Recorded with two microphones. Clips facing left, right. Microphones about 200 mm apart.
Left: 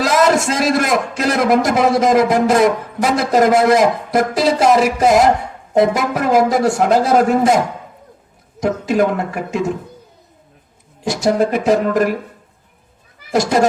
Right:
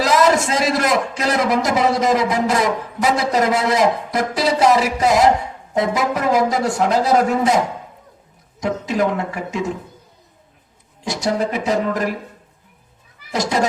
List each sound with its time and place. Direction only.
0.0 s a man's voice: 50° left (ahead or behind)
8.6 s a man's voice: 50° left (ahead or behind)
11.0 s a man's voice: 50° left (ahead or behind)
13.3 s a man's voice: 50° left (ahead or behind)